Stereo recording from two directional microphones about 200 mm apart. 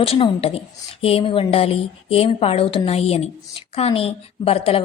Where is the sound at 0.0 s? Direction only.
30° left (ahead or behind).